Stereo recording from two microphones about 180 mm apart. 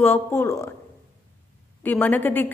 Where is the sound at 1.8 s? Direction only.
10° left (ahead or behind).